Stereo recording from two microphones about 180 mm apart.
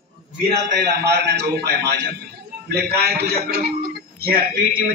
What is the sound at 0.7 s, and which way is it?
A man's voice, 70° right (ahead or behind).